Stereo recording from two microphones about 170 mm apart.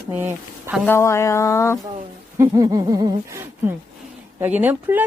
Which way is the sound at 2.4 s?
20° right (ahead or behind).